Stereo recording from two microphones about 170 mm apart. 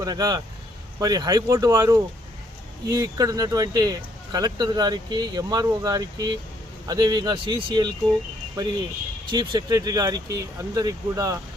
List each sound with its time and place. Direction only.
0.0 s speech: 20° right (ahead or behind)